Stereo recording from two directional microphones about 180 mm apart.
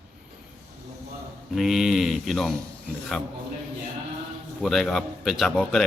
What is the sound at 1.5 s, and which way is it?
Speech, centre (ahead or behind).